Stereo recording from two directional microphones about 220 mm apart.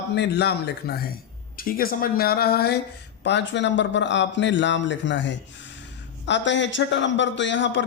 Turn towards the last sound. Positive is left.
turn(degrees=55)  # may be behind; listen again after turning